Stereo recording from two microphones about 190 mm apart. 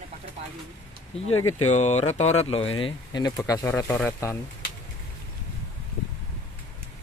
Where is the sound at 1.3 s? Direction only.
90° left.